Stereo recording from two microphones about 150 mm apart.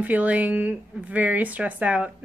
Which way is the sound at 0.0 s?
10° right (ahead or behind).